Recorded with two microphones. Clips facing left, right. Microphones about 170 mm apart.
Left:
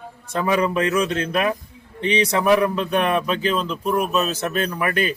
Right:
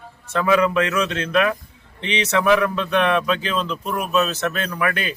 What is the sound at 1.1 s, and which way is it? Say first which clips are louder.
Speech: right 1 dB; 40° left (ahead or behind).